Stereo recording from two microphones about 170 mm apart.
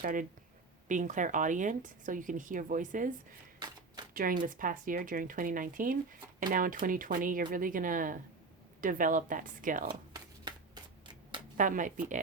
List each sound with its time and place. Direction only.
0.0 s speech: 50° right (ahead or behind)
11.5 s speech: 50° right (ahead or behind)